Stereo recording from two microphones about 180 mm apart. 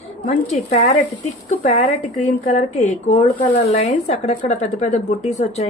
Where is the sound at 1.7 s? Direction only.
40° left (ahead or behind).